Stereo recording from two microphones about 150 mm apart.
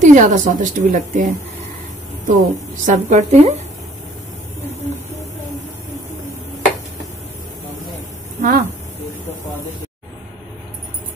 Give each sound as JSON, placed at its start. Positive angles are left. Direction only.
{"t": 0.0, "sound": "a woman's voice", "side_deg": -55}
{"t": 8.4, "sound": "speech", "side_deg": -60}